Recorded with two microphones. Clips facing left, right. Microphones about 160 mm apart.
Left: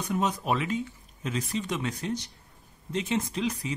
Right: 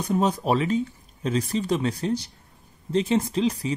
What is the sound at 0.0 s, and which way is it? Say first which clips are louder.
Speech: right 5 dB; 35° right (ahead or behind).